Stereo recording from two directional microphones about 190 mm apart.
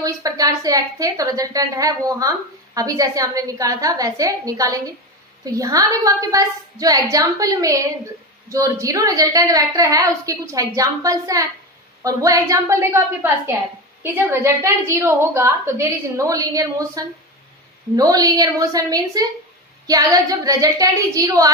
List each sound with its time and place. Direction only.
0.0 s a woman's voice: 20° right (ahead or behind)